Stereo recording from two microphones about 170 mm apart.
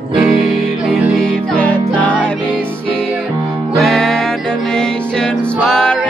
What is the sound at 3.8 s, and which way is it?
Music, centre (ahead or behind).